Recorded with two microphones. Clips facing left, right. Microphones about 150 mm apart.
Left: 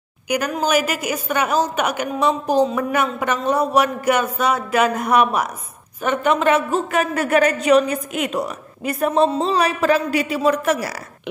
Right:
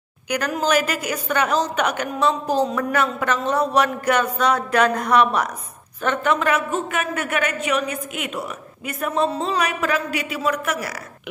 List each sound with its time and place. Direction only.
0.7 s a woman's voice: 10° left (ahead or behind); by 10.9 s 30° left (ahead or behind)